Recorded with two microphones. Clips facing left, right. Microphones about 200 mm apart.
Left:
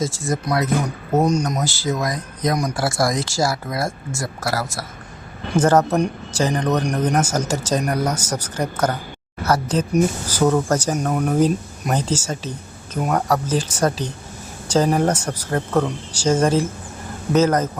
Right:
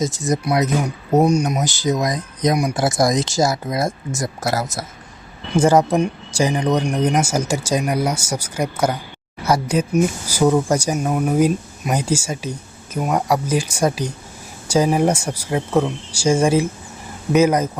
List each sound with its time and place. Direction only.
0.0 s speech: 20° right (ahead or behind)